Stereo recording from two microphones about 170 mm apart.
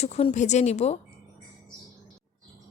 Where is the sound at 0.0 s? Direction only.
40° left (ahead or behind).